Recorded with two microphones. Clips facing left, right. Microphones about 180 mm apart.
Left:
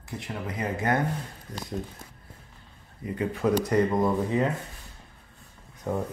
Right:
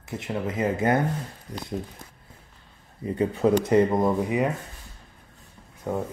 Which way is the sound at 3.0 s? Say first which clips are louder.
Right 5 dB; 30° right (ahead or behind).